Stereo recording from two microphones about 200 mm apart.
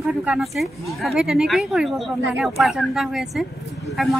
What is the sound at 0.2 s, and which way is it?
Speech, 5° right (ahead or behind).